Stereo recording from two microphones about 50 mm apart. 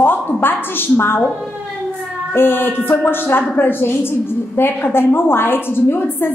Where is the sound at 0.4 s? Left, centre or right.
Left.